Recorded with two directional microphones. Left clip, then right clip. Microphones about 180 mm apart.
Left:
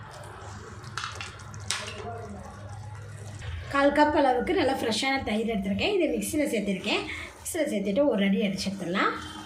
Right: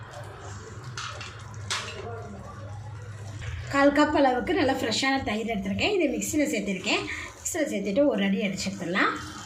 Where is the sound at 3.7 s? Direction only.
Centre (ahead or behind).